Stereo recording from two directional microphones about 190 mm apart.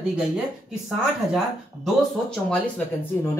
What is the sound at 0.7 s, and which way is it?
Speech, centre (ahead or behind).